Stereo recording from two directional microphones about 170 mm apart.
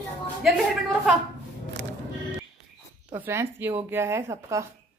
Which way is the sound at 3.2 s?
15° right (ahead or behind).